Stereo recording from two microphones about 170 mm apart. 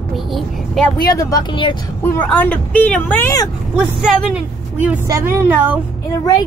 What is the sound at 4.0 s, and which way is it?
Speech, 5° right (ahead or behind).